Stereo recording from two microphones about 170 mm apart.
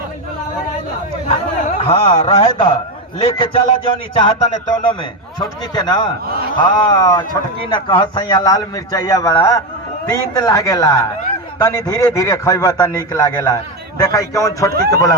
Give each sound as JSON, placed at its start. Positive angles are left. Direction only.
{"t": 1.8, "sound": "a man's voice", "side_deg": 30}